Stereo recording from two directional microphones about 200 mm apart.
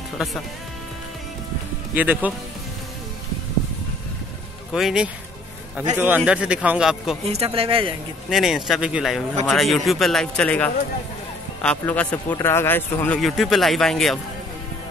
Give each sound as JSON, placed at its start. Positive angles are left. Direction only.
{"t": 2.0, "sound": "speech", "side_deg": -10}
{"t": 4.7, "sound": "a man's voice", "side_deg": 0}
{"t": 7.2, "sound": "speech", "side_deg": -30}
{"t": 8.3, "sound": "a man's voice", "side_deg": 0}